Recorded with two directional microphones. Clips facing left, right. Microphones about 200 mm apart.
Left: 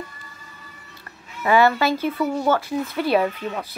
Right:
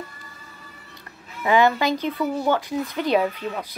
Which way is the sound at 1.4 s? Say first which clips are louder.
Left 1 dB; 15° right (ahead or behind).